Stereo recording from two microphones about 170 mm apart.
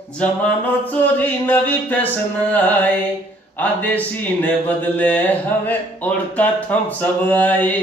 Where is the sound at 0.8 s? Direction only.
10° left (ahead or behind).